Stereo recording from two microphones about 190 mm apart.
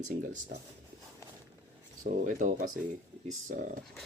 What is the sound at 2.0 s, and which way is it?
Speech, 45° right (ahead or behind).